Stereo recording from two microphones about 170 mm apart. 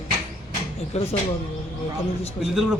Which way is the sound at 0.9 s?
40° left (ahead or behind).